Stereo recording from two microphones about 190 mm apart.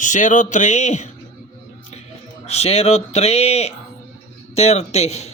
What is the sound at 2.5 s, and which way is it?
Speech, 35° left (ahead or behind).